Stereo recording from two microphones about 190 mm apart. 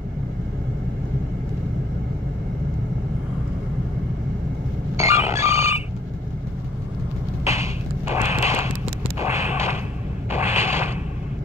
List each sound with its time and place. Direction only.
4.9 s telephone bell ringing: 15° right (ahead or behind)
7.4 s a sound: 15° right (ahead or behind)
10.3 s creak: 15° right (ahead or behind)